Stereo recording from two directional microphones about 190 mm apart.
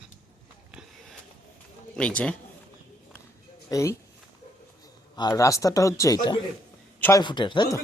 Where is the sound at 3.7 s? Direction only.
15° left (ahead or behind).